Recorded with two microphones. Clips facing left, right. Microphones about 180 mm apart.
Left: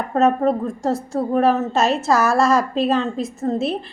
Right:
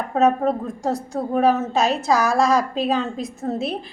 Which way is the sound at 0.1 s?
Centre (ahead or behind).